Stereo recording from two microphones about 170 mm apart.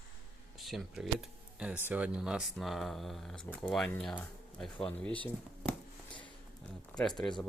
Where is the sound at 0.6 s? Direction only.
Centre (ahead or behind).